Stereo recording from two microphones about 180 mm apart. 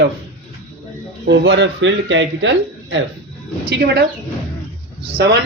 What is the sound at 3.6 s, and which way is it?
Speech, 65° right (ahead or behind).